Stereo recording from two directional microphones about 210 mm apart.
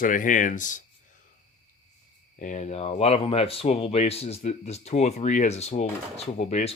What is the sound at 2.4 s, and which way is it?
Speech, 35° left (ahead or behind).